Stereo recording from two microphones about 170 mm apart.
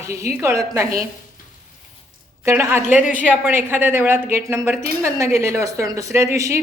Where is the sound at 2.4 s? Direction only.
15° right (ahead or behind).